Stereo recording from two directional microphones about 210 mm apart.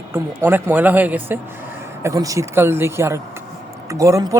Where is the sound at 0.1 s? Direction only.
10° right (ahead or behind).